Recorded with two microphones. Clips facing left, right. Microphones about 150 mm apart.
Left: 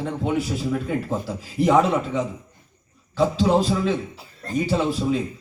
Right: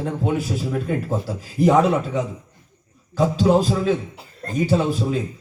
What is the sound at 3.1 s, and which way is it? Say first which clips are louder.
Speech: right 2 dB; 40° right (ahead or behind).